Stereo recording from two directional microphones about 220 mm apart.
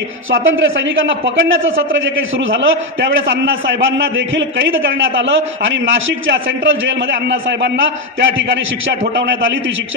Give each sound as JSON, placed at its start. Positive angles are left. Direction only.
{"t": 0.4, "sound": "a man's voice", "side_deg": -60}